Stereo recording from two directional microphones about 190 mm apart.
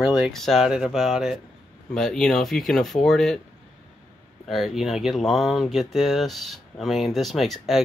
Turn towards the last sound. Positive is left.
turn(degrees=0)  # may be behind; listen again after turning